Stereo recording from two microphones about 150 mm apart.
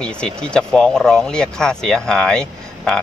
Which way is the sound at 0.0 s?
5° left (ahead or behind).